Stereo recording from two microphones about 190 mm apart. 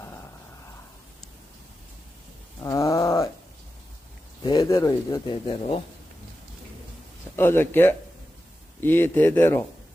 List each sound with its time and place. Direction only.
2.6 s a sound: 20° left (ahead or behind)
4.4 s speech: 20° left (ahead or behind)
7.3 s speech: 10° left (ahead or behind)